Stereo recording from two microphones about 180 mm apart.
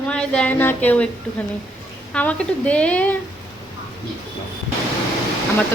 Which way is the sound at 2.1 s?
5° left (ahead or behind).